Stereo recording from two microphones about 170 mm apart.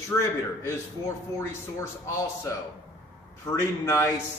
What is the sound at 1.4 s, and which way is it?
A man's voice, 15° left (ahead or behind).